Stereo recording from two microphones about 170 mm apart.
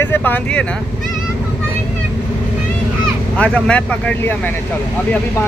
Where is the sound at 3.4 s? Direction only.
5° left (ahead or behind).